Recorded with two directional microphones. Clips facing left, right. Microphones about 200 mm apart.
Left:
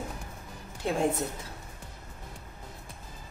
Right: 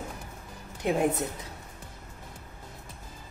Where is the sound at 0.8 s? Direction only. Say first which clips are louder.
Right 3 dB; 20° right (ahead or behind).